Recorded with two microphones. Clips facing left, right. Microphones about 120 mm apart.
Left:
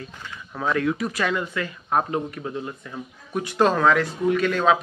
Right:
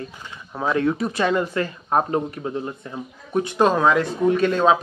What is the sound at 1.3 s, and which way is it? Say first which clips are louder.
Speech: right 5 dB; 40° right (ahead or behind).